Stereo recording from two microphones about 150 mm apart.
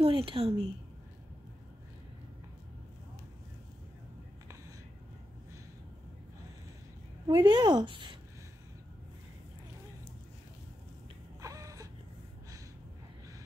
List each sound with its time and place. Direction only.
0.0 s a woman's voice: 35° right (ahead or behind)
7.2 s a woman's voice: 30° right (ahead or behind)
11.4 s a sound: 20° right (ahead or behind)